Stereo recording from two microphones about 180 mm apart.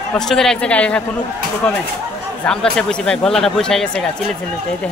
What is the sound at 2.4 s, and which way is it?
Speech, 5° left (ahead or behind).